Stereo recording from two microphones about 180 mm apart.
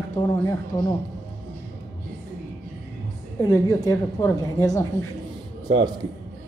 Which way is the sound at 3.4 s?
20° left (ahead or behind).